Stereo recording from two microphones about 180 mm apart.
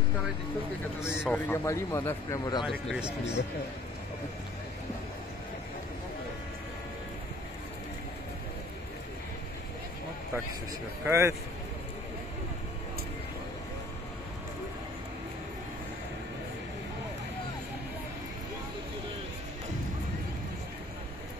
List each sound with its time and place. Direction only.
1.0 s speech: 5° right (ahead or behind)
1.3 s speech: 15° left (ahead or behind)
2.9 s speech: 5° right (ahead or behind)
11.1 s speech: 15° right (ahead or behind)